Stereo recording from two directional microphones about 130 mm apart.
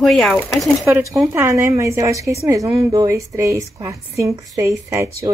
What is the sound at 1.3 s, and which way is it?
A woman's voice, 20° right (ahead or behind).